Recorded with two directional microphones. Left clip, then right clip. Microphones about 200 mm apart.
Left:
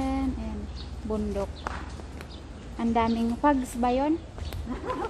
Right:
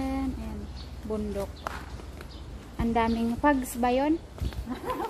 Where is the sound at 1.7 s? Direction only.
50° right (ahead or behind).